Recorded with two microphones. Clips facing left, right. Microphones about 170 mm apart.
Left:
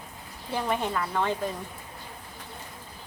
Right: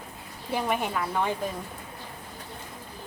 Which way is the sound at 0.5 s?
10° right (ahead or behind).